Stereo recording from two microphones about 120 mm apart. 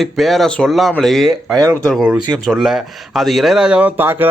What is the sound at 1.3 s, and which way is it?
Speech, 25° right (ahead or behind).